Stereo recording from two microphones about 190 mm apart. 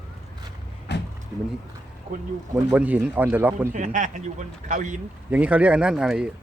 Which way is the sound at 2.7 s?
10° right (ahead or behind).